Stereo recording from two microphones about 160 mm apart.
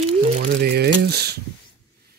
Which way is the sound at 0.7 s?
85° right.